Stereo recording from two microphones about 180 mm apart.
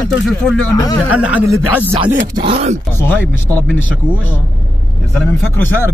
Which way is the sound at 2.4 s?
35° right (ahead or behind).